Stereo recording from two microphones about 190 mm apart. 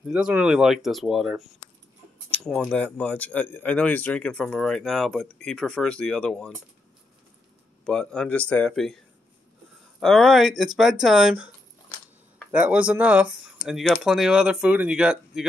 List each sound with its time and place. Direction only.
0.0 s speech: 5° right (ahead or behind)
7.8 s speech: 5° left (ahead or behind)